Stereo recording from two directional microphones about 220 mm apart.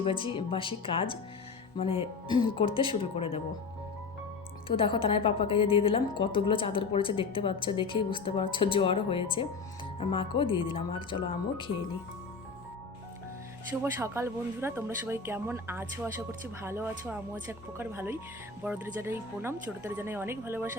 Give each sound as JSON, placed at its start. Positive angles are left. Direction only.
{"t": 0.0, "sound": "a woman's voice", "side_deg": 25}
{"t": 4.7, "sound": "a woman's voice", "side_deg": 25}
{"t": 14.0, "sound": "a woman's voice", "side_deg": -10}